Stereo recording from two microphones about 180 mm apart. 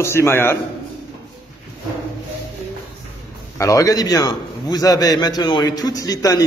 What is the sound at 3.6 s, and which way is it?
A man's voice, 20° left (ahead or behind).